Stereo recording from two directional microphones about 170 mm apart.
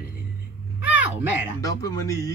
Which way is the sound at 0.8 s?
10° right (ahead or behind).